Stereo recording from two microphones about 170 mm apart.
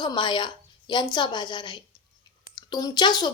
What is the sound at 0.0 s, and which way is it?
Speech, 25° left (ahead or behind).